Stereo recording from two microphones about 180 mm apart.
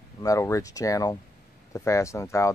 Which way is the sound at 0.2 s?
15° left (ahead or behind).